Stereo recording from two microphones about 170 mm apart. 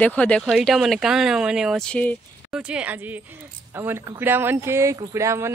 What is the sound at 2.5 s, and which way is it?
Speech, 5° right (ahead or behind).